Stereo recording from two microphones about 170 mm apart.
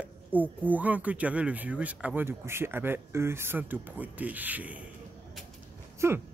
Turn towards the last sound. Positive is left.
turn(degrees=-15)  # may be behind; listen again after turning